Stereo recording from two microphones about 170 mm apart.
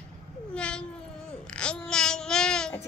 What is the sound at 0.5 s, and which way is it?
Cat, 5° left (ahead or behind).